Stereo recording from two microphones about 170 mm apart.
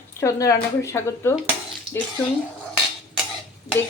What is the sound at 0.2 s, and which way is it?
A woman's voice, 20° left (ahead or behind).